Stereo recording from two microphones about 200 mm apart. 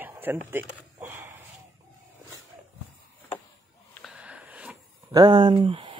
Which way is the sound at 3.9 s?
Centre (ahead or behind).